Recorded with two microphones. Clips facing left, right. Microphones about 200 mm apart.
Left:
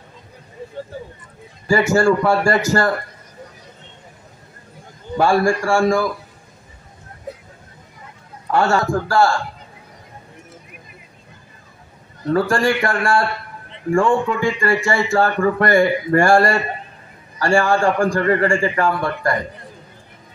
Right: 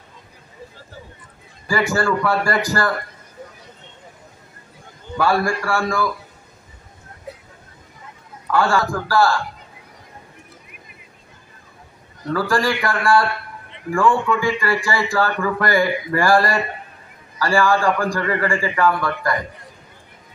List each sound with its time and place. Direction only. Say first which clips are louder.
1.7 s speech: left 5 dB; 25° left (ahead or behind)
5.1 s speech: left 3 dB; 25° left (ahead or behind)
8.5 s speech: left 2 dB; 25° left (ahead or behind)
12.3 s speech: left 3 dB; 25° left (ahead or behind)